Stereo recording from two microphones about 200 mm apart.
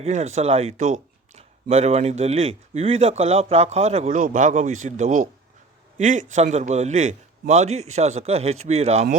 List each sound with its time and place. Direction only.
0.0 s a man's voice: 30° right (ahead or behind)